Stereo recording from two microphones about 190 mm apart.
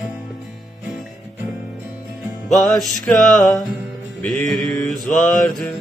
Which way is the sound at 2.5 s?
Centre (ahead or behind).